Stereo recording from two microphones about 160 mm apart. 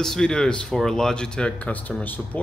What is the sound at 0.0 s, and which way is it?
Speech, 5° left (ahead or behind).